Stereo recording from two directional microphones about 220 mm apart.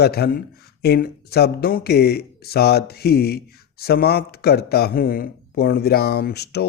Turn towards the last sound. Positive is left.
turn(degrees=50)  # may be behind; listen again after turning